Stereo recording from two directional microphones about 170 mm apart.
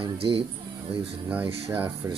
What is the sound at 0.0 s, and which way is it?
Speech, 30° right (ahead or behind).